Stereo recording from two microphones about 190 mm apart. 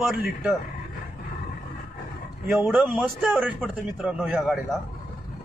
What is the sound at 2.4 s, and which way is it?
Speech, 10° right (ahead or behind).